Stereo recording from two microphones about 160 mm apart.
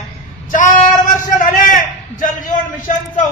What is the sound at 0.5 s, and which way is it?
A man's voice, 55° left (ahead or behind).